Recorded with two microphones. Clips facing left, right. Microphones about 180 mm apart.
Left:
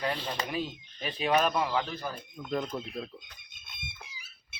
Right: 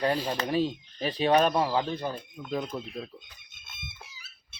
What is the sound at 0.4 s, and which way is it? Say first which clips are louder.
Speech: right 7 dB; 30° right (ahead or behind).